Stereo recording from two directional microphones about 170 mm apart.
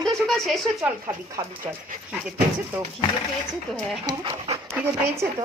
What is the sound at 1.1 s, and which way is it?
Speech, 15° right (ahead or behind).